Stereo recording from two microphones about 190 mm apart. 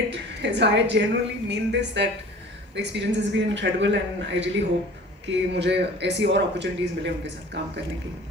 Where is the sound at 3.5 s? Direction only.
70° right (ahead or behind).